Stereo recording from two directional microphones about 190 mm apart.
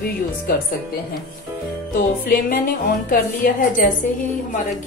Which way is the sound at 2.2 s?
50° left (ahead or behind).